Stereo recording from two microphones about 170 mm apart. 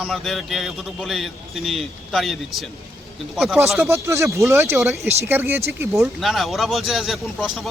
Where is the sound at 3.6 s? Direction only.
15° right (ahead or behind).